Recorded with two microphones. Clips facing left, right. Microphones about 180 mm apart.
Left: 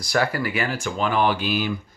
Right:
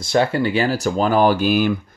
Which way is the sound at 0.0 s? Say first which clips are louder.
Right 5 dB; 25° right (ahead or behind).